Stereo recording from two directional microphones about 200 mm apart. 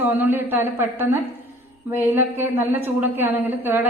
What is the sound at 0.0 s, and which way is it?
A woman's voice, 10° right (ahead or behind).